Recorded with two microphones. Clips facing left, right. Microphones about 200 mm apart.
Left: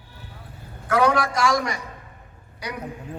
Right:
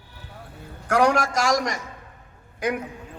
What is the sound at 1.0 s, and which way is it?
A man's voice, 45° right (ahead or behind).